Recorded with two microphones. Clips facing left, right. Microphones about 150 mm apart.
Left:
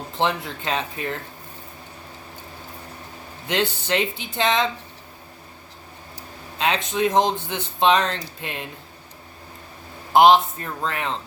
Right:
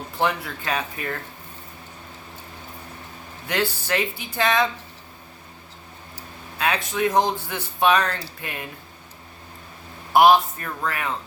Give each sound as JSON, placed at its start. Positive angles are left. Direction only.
{"t": 0.2, "sound": "speech", "side_deg": 25}
{"t": 3.4, "sound": "speech", "side_deg": 20}
{"t": 6.6, "sound": "speech", "side_deg": 20}
{"t": 10.1, "sound": "speech", "side_deg": 20}